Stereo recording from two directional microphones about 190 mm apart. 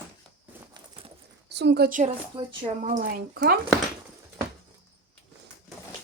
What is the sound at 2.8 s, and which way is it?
Speech, 45° right (ahead or behind).